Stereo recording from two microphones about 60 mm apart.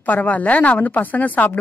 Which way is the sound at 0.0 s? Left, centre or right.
Left.